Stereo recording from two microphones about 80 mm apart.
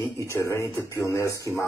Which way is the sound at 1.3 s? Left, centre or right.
Right.